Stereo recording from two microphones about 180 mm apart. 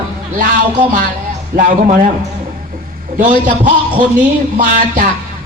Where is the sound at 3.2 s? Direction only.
45° right (ahead or behind).